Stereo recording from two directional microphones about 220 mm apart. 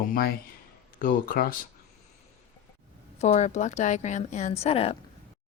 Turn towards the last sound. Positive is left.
turn(degrees=25)  # may be behind; listen again after turning